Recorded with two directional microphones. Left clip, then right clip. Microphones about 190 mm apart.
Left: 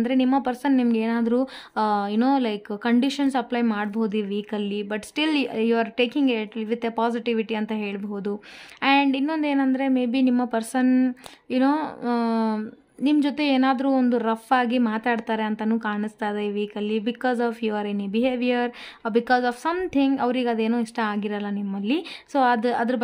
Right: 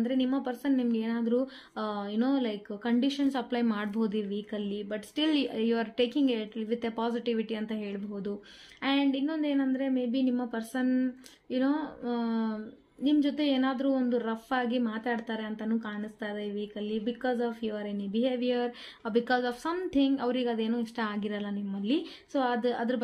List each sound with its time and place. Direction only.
0.0 s a woman's voice: 35° left (ahead or behind)